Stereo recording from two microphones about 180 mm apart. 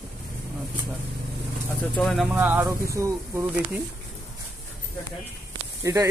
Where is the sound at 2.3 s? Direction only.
10° right (ahead or behind).